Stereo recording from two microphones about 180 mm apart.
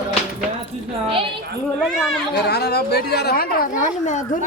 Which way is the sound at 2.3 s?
65° left (ahead or behind).